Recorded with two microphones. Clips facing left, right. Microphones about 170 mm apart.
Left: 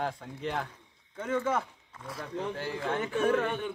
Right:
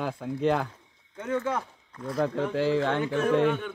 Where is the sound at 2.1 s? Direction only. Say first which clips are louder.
Right 9 dB; 80° right.